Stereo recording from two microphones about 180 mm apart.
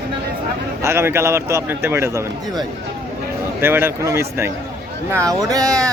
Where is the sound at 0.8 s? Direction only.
15° right (ahead or behind).